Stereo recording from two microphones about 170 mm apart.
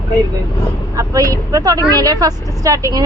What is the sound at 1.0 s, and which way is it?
Speech, 20° right (ahead or behind).